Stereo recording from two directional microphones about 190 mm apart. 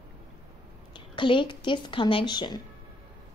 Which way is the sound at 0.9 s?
25° left (ahead or behind).